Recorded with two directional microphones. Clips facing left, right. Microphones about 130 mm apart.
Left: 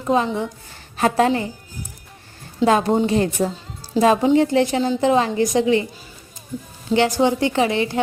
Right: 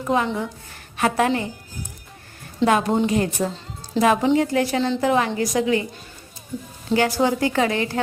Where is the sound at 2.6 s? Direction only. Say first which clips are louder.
Left 2 dB; 30° left (ahead or behind).